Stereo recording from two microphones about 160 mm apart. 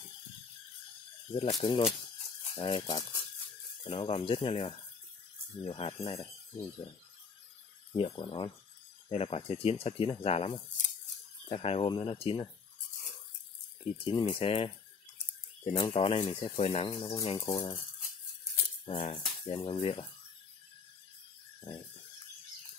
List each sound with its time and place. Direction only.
1.3 s speech: 30° left (ahead or behind)
7.9 s speech: 35° left (ahead or behind)
13.9 s speech: 35° left (ahead or behind)
17.5 s speech: 25° left (ahead or behind)
18.9 s speech: 40° left (ahead or behind)